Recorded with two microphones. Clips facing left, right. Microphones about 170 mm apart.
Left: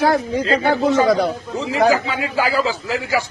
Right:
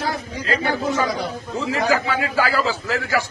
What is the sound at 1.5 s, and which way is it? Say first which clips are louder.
A man's voice: left 4 dB; 20° left (ahead or behind).